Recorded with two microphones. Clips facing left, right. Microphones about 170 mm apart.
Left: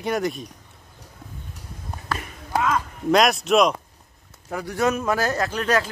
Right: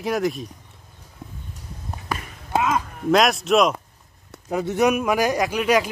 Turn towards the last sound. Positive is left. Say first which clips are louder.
# right 3 dB
turn(degrees=-10)  # may be behind; listen again after turning